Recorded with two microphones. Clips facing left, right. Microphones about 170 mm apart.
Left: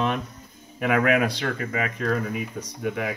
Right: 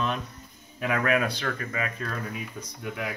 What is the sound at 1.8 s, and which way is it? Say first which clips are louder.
Speech: left 7 dB; 80° left.